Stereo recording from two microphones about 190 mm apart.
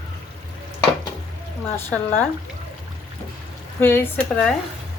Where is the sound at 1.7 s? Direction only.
10° left (ahead or behind).